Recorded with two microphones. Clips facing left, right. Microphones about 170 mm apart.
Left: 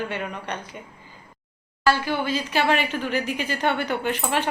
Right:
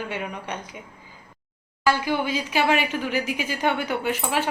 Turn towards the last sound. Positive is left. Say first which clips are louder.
# even
turn(degrees=-5)  # may be behind; listen again after turning